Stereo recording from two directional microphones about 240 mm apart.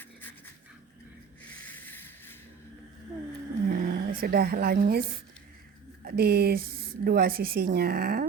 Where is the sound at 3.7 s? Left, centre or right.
Right.